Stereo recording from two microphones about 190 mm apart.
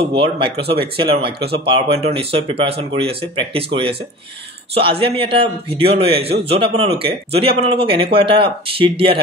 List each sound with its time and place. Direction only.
0.1 s speech: 30° right (ahead or behind)
1.4 s speech: 60° right (ahead or behind)
1.7 s speech: 30° right (ahead or behind)